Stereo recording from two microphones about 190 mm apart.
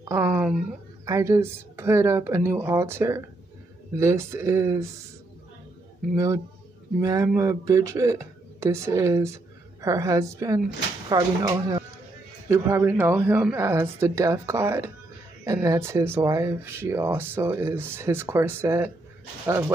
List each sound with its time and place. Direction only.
0.1 s speech: 10° right (ahead or behind)
6.1 s speech: 15° right (ahead or behind)